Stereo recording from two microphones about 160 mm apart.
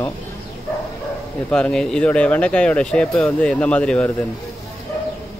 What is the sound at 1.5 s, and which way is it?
Speech, 5° left (ahead or behind).